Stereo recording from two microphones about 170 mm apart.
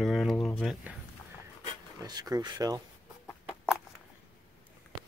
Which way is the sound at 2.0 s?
20° right (ahead or behind).